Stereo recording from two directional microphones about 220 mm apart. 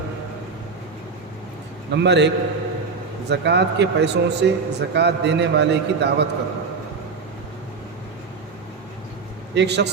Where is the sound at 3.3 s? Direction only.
50° right (ahead or behind).